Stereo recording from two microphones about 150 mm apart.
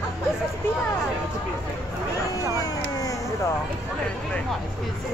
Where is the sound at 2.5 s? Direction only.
25° left (ahead or behind).